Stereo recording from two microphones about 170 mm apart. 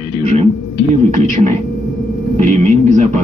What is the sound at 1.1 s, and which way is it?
Speech, 45° right (ahead or behind).